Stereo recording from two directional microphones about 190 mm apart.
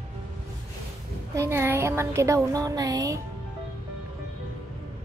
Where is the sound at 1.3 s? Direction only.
15° right (ahead or behind).